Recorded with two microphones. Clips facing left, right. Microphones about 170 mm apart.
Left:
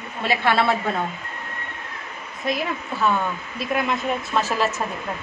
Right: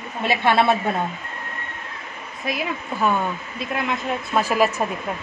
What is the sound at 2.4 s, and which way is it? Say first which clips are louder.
A woman's voice: left 1 dB; 5° right (ahead or behind).